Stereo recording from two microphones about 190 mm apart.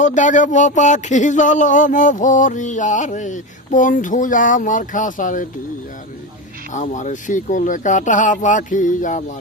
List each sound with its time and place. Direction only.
0.0 s speech: 40° left (ahead or behind)
6.7 s speech: 40° left (ahead or behind)